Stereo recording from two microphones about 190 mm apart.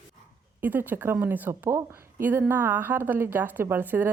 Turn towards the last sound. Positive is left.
turn(degrees=-10)  # may be behind; listen again after turning